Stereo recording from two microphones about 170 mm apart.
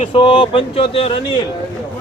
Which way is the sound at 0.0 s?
30° left (ahead or behind).